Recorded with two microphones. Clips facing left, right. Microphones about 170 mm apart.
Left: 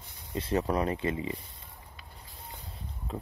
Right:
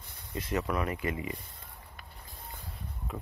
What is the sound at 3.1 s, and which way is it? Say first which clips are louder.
Speech: left 3 dB; 30° left (ahead or behind).